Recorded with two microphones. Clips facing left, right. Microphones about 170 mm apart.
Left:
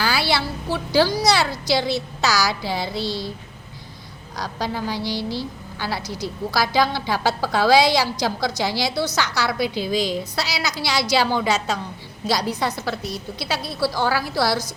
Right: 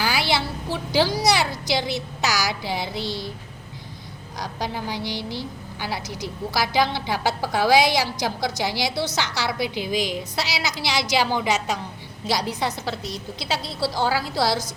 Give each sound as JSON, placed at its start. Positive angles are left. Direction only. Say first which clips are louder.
{"t": 0.0, "sound": "a woman's voice", "louder": "left 1 dB", "side_deg": -20}
{"t": 4.4, "sound": "a woman's voice", "louder": "left 3 dB", "side_deg": -20}